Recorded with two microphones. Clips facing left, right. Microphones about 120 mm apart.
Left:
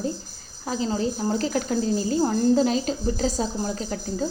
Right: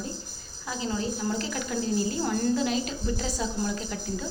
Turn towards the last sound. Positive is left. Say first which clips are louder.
# left 5 dB
turn(degrees=40)  # may be behind; listen again after turning